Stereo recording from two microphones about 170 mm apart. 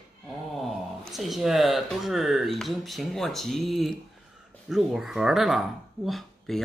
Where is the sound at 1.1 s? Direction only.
Centre (ahead or behind).